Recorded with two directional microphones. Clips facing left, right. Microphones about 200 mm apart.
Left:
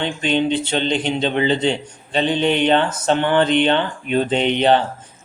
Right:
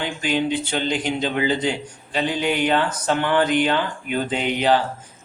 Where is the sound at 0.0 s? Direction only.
25° left (ahead or behind).